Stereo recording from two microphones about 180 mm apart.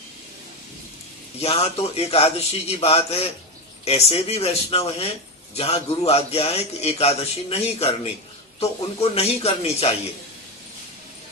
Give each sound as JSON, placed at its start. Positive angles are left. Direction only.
{"t": 1.4, "sound": "a man's voice", "side_deg": 35}